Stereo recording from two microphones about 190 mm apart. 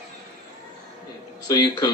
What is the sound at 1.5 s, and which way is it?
Speech, 20° left (ahead or behind).